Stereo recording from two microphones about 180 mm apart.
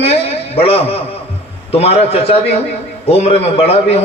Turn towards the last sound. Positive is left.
turn(degrees=35)  # may be behind; listen again after turning